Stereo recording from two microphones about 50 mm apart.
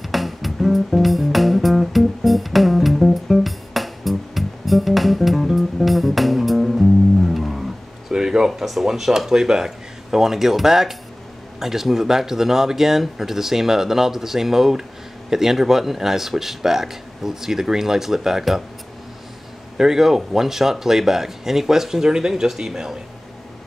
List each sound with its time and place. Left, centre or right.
0.0 s music: centre
8.1 s speech: centre
19.8 s speech: centre